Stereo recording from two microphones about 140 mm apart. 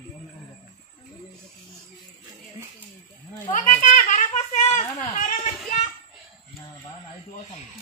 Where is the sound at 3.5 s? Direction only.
65° left (ahead or behind).